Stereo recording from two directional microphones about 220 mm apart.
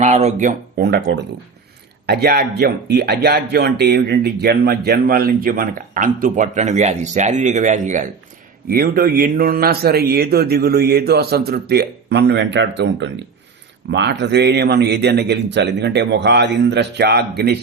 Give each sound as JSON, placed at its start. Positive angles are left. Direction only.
{"t": 0.0, "sound": "a man's voice", "side_deg": -30}